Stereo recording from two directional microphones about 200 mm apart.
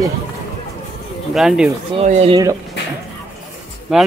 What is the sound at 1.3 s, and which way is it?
Speech, centre (ahead or behind).